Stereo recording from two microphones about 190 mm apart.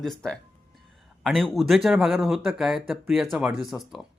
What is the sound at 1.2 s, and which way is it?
A man's voice, centre (ahead or behind).